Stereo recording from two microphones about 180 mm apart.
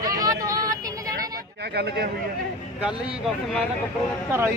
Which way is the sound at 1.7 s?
65° right (ahead or behind).